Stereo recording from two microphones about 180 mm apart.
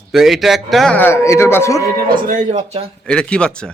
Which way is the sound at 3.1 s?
5° left (ahead or behind).